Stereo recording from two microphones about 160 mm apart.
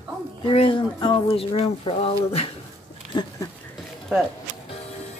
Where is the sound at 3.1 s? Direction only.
30° left (ahead or behind).